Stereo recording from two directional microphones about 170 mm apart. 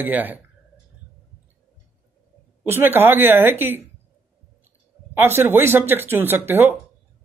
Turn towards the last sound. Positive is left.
turn(degrees=-10)  # may be behind; listen again after turning